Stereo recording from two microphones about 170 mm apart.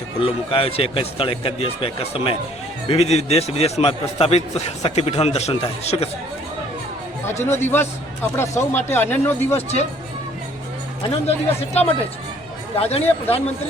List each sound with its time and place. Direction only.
0.2 s speech: 30° left (ahead or behind)
7.3 s speech: 15° left (ahead or behind)
9.6 s speech: 40° left (ahead or behind)
11.1 s speech: 40° left (ahead or behind)